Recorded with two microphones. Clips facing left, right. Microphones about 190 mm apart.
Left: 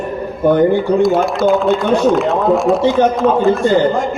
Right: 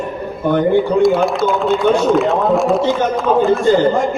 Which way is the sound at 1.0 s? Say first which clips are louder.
Left 1 dB; centre (ahead or behind).